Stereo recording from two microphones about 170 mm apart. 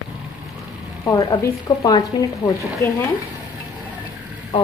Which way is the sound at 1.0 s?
20° left (ahead or behind).